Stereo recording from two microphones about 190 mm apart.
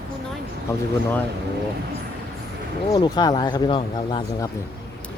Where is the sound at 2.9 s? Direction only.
20° left (ahead or behind).